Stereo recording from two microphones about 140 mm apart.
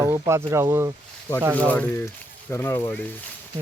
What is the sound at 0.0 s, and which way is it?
Speech, 20° right (ahead or behind).